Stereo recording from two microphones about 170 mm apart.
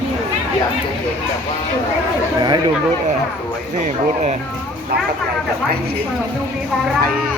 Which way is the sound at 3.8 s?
45° right (ahead or behind).